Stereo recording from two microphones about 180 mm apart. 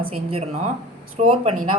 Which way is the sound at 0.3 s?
35° right (ahead or behind).